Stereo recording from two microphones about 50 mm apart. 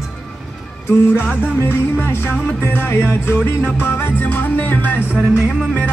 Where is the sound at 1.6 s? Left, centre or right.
Left.